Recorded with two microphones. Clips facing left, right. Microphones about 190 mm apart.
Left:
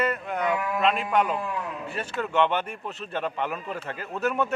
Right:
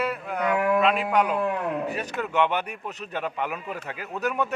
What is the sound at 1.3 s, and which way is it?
Speech, 60° right (ahead or behind).